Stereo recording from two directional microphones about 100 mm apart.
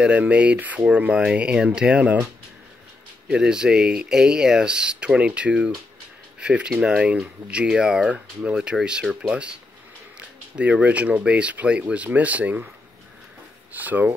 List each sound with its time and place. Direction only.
0.0 s speech: 15° right (ahead or behind)
3.3 s speech: 10° right (ahead or behind)
13.7 s speech: 15° right (ahead or behind)